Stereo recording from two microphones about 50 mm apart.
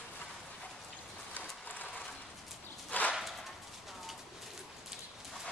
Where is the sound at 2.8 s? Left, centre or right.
Left.